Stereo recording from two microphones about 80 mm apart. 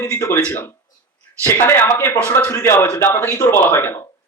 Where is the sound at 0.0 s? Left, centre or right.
Left.